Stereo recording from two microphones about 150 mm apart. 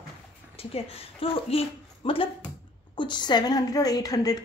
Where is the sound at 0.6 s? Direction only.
40° left (ahead or behind).